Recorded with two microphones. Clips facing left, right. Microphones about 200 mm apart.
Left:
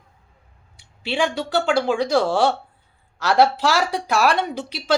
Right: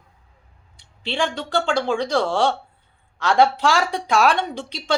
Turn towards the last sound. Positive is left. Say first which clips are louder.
# left 2 dB
turn(degrees=5)  # may be behind; listen again after turning